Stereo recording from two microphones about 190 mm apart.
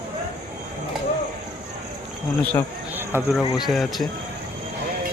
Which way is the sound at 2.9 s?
10° right (ahead or behind).